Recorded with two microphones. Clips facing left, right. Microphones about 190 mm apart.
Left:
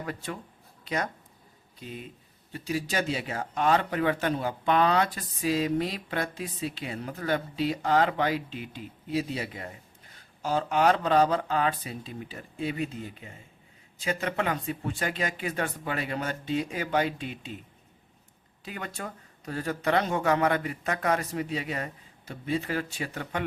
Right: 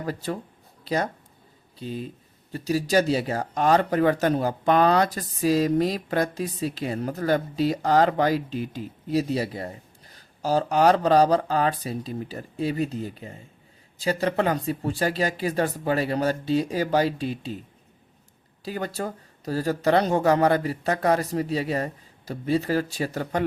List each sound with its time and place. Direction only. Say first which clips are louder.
0.0 s speech: right 6 dB; 35° right (ahead or behind)
18.6 s speech: right 8 dB; 35° right (ahead or behind)